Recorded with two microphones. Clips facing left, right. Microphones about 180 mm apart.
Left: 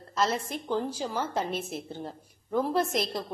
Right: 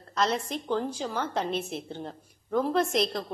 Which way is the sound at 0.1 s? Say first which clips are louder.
Right 1 dB; 5° left (ahead or behind).